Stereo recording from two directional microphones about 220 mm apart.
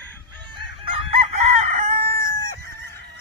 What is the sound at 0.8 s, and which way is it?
Chicken, 25° right (ahead or behind).